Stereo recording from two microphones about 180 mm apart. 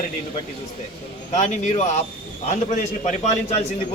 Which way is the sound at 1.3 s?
40° left (ahead or behind).